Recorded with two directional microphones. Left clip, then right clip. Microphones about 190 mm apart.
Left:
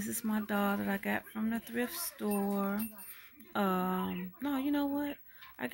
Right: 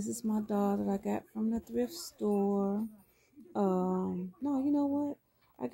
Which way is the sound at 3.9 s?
50° left (ahead or behind).